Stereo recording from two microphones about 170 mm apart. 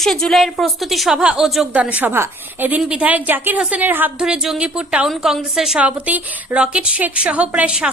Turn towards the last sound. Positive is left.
turn(degrees=-5)  # may be behind; listen again after turning